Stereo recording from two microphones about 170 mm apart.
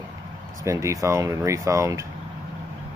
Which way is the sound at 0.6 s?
15° right (ahead or behind).